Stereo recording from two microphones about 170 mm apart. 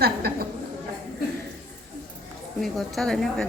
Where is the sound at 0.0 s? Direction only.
65° right (ahead or behind).